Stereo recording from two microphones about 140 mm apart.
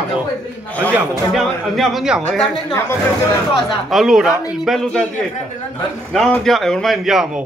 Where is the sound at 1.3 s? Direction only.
Centre (ahead or behind).